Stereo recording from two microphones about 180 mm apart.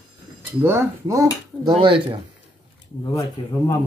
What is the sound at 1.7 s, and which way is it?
Speech, 25° right (ahead or behind).